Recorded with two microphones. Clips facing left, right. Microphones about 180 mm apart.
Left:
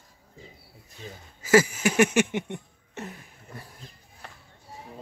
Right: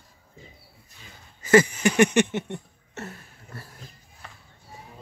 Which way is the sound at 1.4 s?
5° left (ahead or behind).